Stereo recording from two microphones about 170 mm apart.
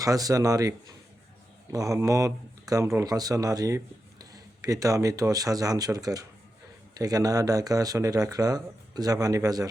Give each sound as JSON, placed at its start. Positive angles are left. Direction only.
{"t": 0.0, "sound": "speech", "side_deg": -20}